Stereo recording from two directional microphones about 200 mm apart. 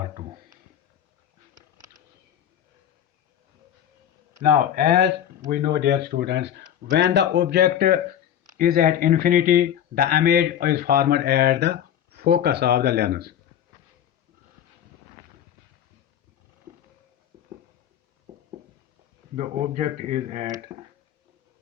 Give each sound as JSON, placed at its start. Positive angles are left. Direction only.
{"t": 4.4, "sound": "speech", "side_deg": -50}
{"t": 19.4, "sound": "speech", "side_deg": -40}